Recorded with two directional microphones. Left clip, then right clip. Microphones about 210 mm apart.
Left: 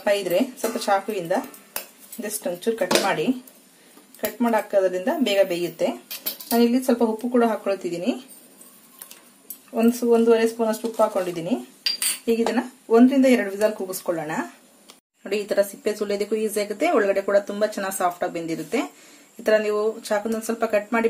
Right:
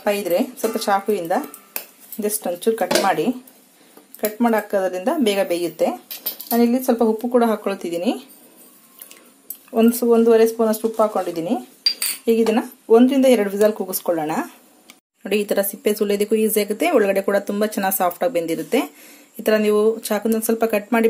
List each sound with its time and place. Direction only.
0.0 s speech: 35° right (ahead or behind)
4.4 s speech: 40° right (ahead or behind)
9.8 s speech: 40° right (ahead or behind)